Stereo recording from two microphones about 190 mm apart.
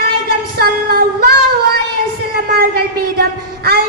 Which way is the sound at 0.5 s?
55° right (ahead or behind).